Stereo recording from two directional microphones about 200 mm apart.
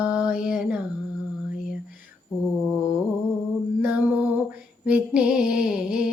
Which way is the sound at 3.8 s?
5° right (ahead or behind).